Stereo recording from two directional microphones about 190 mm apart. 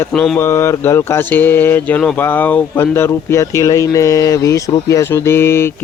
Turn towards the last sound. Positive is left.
turn(degrees=15)  # may be behind; listen again after turning